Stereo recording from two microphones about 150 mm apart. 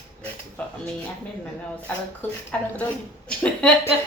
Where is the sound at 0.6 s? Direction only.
5° left (ahead or behind).